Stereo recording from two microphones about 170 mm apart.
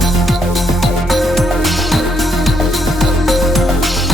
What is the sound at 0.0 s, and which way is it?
Music, centre (ahead or behind).